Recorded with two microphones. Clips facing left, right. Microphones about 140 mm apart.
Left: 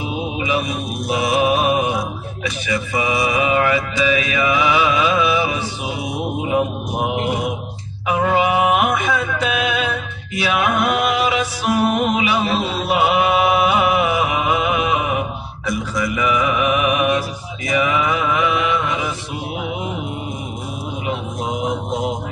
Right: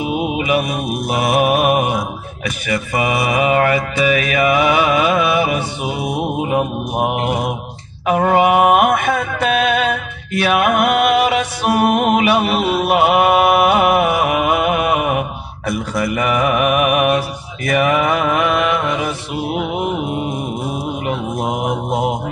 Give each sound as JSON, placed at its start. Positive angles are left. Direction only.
{"t": 0.4, "sound": "mantra", "side_deg": -55}
{"t": 8.0, "sound": "mantra", "side_deg": -55}
{"t": 12.8, "sound": "music", "side_deg": -60}
{"t": 15.6, "sound": "mantra", "side_deg": -55}
{"t": 21.1, "sound": "mantra", "side_deg": -60}